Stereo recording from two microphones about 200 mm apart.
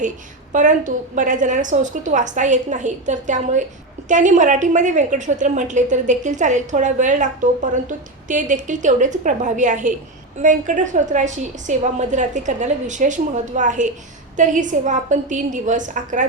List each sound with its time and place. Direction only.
0.5 s a woman's voice: 40° right (ahead or behind)
8.3 s a woman's voice: 40° right (ahead or behind)